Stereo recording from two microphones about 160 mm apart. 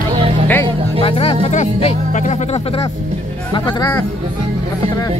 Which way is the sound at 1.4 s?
45° left (ahead or behind).